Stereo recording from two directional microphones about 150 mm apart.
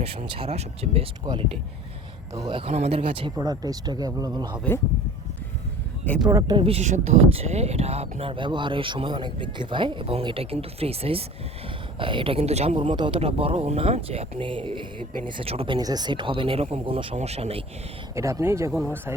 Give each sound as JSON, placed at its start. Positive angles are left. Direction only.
{"t": 0.0, "sound": "speech", "side_deg": -40}
{"t": 1.2, "sound": "speech", "side_deg": -25}
{"t": 2.5, "sound": "speech", "side_deg": -40}
{"t": 3.3, "sound": "speech", "side_deg": -25}
{"t": 6.1, "sound": "speech", "side_deg": 10}
{"t": 6.6, "sound": "speech", "side_deg": -40}
{"t": 18.1, "sound": "speech", "side_deg": -20}